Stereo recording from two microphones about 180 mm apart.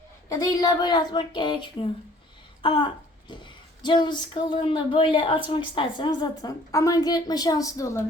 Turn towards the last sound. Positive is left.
turn(degrees=20)  # may be behind; listen again after turning